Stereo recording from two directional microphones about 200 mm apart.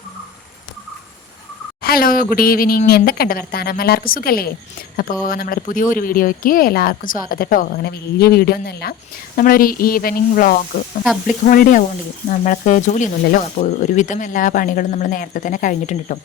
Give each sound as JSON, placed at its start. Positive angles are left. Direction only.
{"t": 1.8, "sound": "speech", "side_deg": 50}
{"t": 11.0, "sound": "speech", "side_deg": 0}
{"t": 11.4, "sound": "speech", "side_deg": 40}